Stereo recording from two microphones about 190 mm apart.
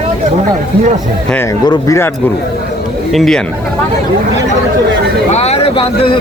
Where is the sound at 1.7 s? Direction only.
15° left (ahead or behind).